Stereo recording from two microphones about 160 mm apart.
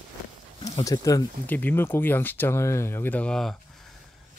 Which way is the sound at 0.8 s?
20° left (ahead or behind).